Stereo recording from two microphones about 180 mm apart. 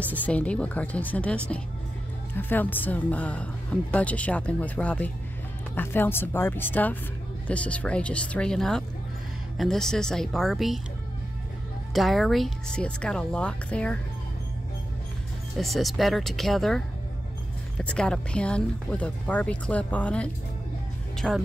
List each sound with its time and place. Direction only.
0.2 s speech: 5° left (ahead or behind)
11.9 s speech: centre (ahead or behind)
15.5 s speech: centre (ahead or behind)
21.2 s speech: 5° right (ahead or behind)